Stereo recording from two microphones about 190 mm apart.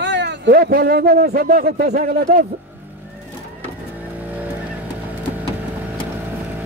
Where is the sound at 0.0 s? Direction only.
65° right (ahead or behind).